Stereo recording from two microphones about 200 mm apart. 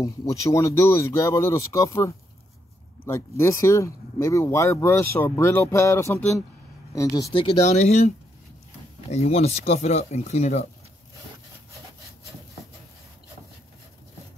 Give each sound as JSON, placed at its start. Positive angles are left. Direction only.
{"t": 0.0, "sound": "speech", "side_deg": 15}
{"t": 9.1, "sound": "speech", "side_deg": 30}